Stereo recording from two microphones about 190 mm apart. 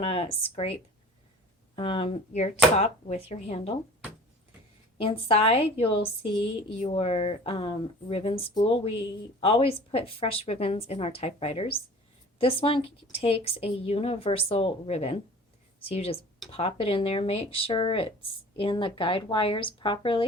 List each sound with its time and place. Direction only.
0.0 s a woman's voice: 30° left (ahead or behind)
4.9 s a woman's voice: 30° left (ahead or behind)